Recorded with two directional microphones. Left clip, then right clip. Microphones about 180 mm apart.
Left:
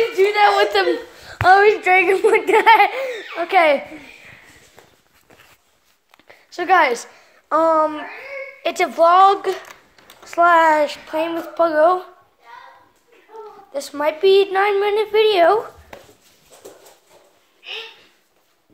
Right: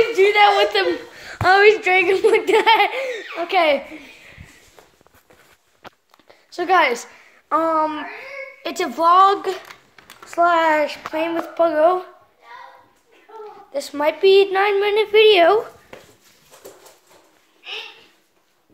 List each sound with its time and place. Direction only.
0.5 s speech: 15° left (ahead or behind)
1.4 s a woman's voice: 10° right (ahead or behind)
6.1 s a sound: 5° left (ahead or behind)
8.6 s speech: 10° left (ahead or behind)
10.2 s speech: 15° left (ahead or behind)
13.7 s a woman's voice: 5° right (ahead or behind)